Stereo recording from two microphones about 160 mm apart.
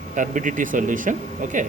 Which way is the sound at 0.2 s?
55° right (ahead or behind).